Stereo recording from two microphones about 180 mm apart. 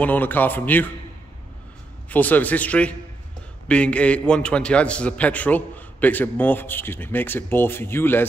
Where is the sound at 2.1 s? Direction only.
10° left (ahead or behind).